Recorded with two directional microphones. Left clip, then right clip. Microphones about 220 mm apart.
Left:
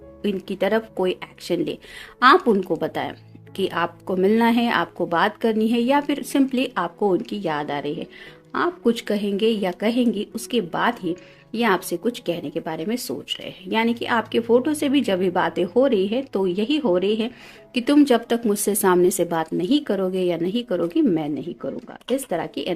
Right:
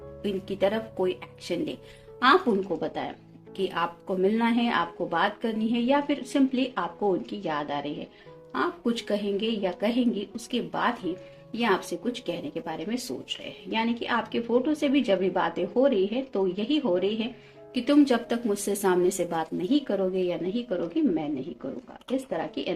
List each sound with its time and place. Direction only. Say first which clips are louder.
0.2 s a woman's voice: left 3 dB; 50° left (ahead or behind)
22.3 s a woman's voice: left 5 dB; 50° left (ahead or behind)